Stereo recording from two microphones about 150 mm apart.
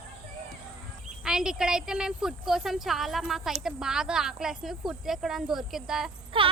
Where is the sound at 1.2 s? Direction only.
5° right (ahead or behind).